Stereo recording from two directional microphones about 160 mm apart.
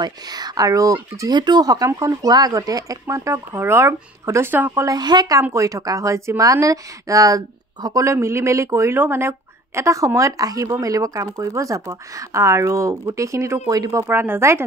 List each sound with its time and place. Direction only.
0.0 s speech: 25° right (ahead or behind)